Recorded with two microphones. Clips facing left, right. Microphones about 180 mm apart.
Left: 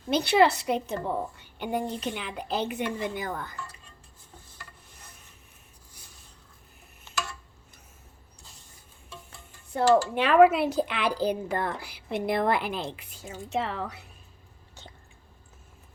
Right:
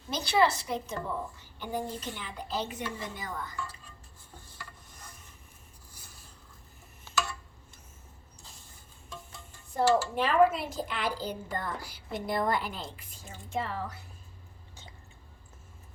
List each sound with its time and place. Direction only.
0.1 s a woman's voice: 65° left (ahead or behind)
9.7 s a woman's voice: 75° left (ahead or behind)